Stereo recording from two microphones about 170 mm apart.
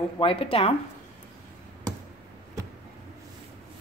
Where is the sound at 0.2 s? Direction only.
35° left (ahead or behind).